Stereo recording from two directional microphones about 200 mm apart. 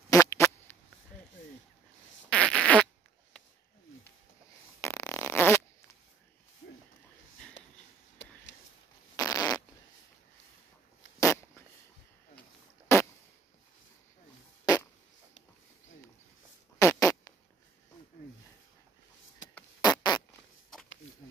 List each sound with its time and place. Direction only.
0.1 s fart: 15° left (ahead or behind)
2.2 s fart: 5° left (ahead or behind)
4.8 s fart: 15° left (ahead or behind)
6.6 s a sound: 45° left (ahead or behind)
8.2 s a sound: 65° left (ahead or behind)
9.1 s fart: 15° left (ahead or behind)
11.1 s a sound: 15° left (ahead or behind)
16.7 s fart: 15° left (ahead or behind)
19.8 s fart: 20° left (ahead or behind)